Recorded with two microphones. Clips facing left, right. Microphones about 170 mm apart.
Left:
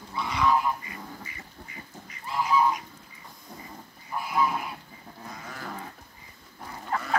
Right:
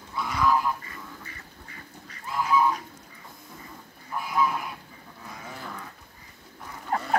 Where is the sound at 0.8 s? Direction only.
15° left (ahead or behind).